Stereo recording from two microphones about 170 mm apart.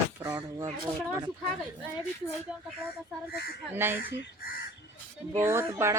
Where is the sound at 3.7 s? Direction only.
10° right (ahead or behind).